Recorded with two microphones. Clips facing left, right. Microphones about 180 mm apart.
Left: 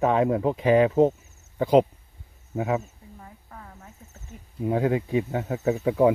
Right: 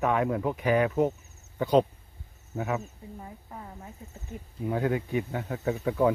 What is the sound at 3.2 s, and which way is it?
Speech, 20° right (ahead or behind).